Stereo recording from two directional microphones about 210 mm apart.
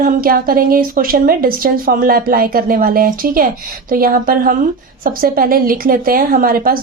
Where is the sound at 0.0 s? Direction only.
45° right (ahead or behind).